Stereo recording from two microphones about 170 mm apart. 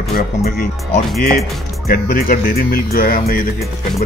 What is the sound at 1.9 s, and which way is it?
Speech, 60° left (ahead or behind).